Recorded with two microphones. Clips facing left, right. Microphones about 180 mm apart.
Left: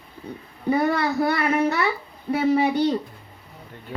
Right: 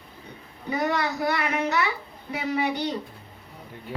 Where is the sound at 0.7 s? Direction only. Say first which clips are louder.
Left 5 dB; 30° left (ahead or behind).